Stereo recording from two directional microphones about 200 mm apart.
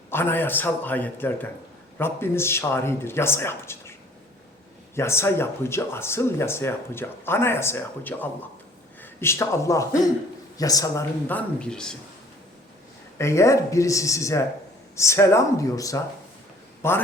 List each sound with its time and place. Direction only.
0.1 s speech: 10° left (ahead or behind)
4.9 s a man's voice: 15° left (ahead or behind)
13.1 s speech: 15° left (ahead or behind)